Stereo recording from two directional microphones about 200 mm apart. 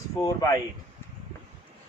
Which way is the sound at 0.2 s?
20° left (ahead or behind).